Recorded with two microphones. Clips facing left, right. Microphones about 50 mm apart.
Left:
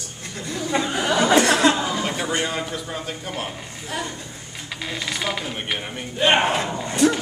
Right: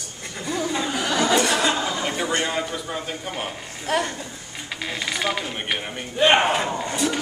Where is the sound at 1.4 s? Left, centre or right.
Left.